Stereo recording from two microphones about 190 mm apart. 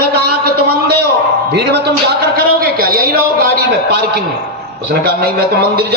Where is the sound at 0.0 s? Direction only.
55° right (ahead or behind).